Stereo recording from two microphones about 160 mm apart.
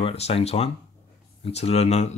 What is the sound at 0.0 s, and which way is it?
Speech, 40° left (ahead or behind).